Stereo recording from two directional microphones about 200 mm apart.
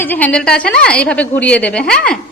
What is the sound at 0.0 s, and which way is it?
A woman's voice, 10° left (ahead or behind).